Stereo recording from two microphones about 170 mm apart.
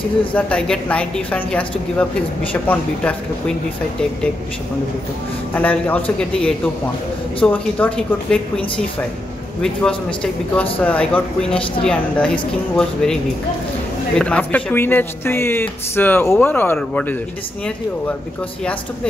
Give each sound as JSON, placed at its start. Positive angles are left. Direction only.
{"t": 0.3, "sound": "speech", "side_deg": 5}
{"t": 5.5, "sound": "a man's voice", "side_deg": 10}